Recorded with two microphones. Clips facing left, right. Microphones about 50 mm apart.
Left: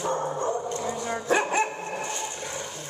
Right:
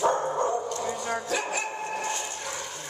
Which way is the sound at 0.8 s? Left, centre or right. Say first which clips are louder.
Even; centre.